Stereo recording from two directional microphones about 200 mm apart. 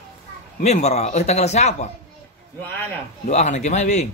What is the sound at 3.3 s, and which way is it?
Speech, 35° left (ahead or behind).